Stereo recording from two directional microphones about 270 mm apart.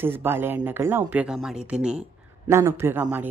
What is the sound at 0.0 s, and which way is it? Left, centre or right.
A woman's voice, centre.